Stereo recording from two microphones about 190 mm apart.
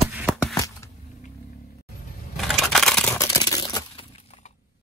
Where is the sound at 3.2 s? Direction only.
15° left (ahead or behind).